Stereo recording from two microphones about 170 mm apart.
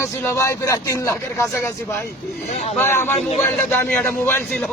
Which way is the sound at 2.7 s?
15° left (ahead or behind).